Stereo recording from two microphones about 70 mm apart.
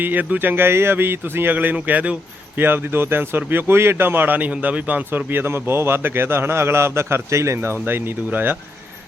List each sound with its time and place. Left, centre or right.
0.0 s speech: right